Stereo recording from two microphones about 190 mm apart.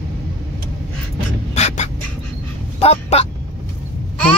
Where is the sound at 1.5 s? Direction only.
35° left (ahead or behind).